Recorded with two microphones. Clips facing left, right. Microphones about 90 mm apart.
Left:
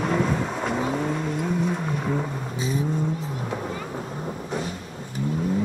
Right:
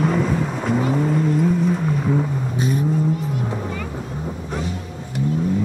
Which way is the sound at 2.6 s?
60° right (ahead or behind).